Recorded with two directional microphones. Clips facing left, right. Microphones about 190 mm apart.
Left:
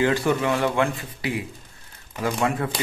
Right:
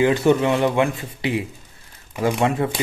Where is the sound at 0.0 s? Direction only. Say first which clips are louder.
Right 5 dB; 20° right (ahead or behind).